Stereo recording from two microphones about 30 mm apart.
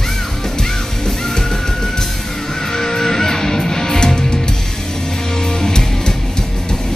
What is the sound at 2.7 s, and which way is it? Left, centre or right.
Music, centre.